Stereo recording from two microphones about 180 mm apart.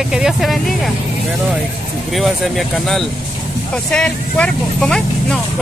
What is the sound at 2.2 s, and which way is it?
Speech, centre (ahead or behind).